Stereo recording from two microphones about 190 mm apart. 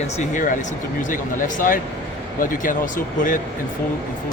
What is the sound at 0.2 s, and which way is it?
Speech, 45° left (ahead or behind).